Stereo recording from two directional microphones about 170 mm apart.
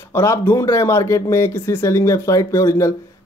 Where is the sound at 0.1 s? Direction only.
15° left (ahead or behind).